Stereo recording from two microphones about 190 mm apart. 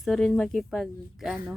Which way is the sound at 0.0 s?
5° left (ahead or behind).